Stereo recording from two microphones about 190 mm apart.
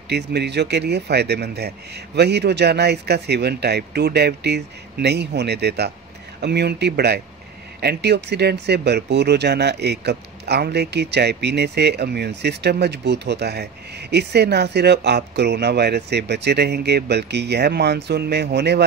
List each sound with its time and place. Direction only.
0.1 s speech: 60° right (ahead or behind)